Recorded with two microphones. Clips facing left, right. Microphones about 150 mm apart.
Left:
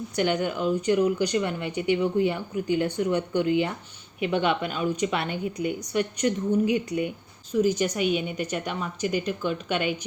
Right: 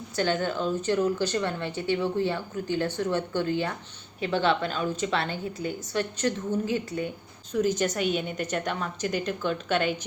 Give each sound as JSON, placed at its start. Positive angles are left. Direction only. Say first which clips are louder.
{"t": 0.2, "sound": "speech", "louder": "left 1 dB", "side_deg": 15}